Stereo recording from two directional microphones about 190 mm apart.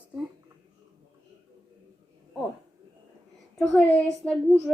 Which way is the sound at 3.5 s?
5° left (ahead or behind).